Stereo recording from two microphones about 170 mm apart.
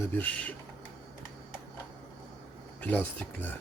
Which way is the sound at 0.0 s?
10° left (ahead or behind).